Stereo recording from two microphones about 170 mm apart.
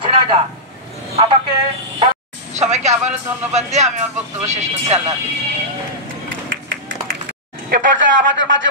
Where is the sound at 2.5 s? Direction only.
40° right (ahead or behind).